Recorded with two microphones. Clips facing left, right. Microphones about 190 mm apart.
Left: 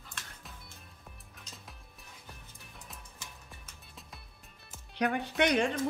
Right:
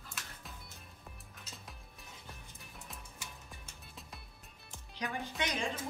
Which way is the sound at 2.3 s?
Centre (ahead or behind).